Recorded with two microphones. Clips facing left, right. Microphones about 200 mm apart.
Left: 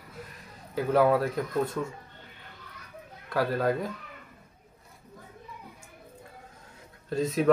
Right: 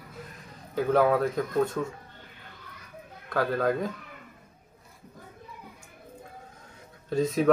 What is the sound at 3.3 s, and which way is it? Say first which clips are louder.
Speech: right 1 dB; 5° left (ahead or behind).